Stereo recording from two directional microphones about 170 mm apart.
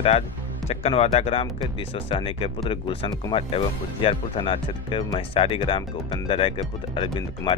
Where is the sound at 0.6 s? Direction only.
35° left (ahead or behind).